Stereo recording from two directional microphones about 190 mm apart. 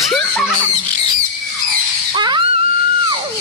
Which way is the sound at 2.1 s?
25° right (ahead or behind).